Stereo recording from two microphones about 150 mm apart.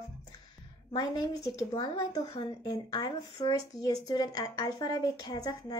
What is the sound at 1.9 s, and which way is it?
A woman's voice, 20° left (ahead or behind).